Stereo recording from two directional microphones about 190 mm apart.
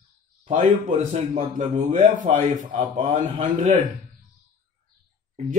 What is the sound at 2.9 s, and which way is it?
Speech, 30° right (ahead or behind).